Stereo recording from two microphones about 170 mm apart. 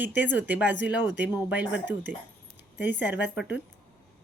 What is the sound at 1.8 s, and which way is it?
Speech, 90° left.